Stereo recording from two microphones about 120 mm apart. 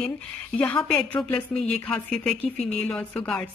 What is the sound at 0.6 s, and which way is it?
A woman's voice, 10° left (ahead or behind).